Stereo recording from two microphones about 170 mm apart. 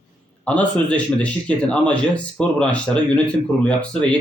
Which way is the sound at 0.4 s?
5° left (ahead or behind).